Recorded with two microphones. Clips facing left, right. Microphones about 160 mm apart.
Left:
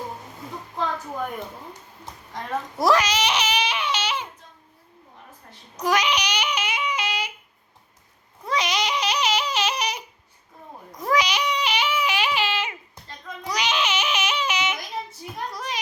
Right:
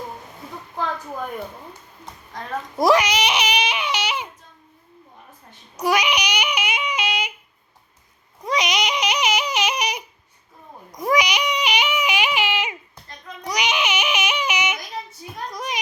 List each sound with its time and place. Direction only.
2.7 s baby cry: 15° right (ahead or behind)
5.7 s yodeling: 10° right (ahead or behind)
8.4 s baby cry: 15° right (ahead or behind)
10.9 s a sound: 15° right (ahead or behind)
13.4 s yodeling: 15° right (ahead or behind)
15.4 s a sound: 15° right (ahead or behind)